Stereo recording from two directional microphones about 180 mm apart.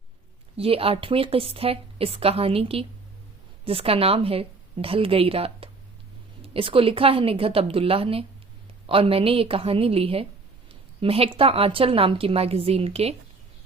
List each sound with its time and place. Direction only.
0.5 s a woman's voice: 30° right (ahead or behind)